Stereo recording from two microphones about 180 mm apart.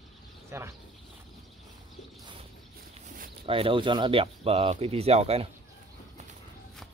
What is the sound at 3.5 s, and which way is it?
Speech, 30° right (ahead or behind).